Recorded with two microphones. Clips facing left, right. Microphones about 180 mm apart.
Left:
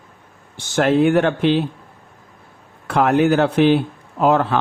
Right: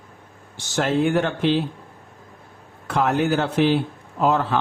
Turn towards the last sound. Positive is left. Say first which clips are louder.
# left 4 dB
turn(degrees=60)  # may be behind; listen again after turning